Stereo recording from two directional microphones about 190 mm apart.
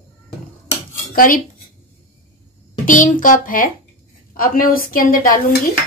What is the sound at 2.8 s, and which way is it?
A woman's voice, 45° left (ahead or behind).